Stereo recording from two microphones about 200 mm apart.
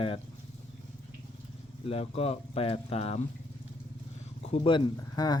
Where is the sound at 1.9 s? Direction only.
30° left (ahead or behind).